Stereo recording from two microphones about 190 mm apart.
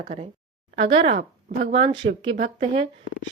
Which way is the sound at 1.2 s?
45° right (ahead or behind).